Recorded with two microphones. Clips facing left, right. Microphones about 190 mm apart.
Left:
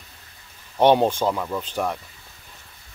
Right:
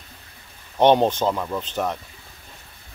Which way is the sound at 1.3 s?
5° right (ahead or behind).